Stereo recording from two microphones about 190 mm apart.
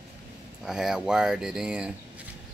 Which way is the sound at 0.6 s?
5° right (ahead or behind).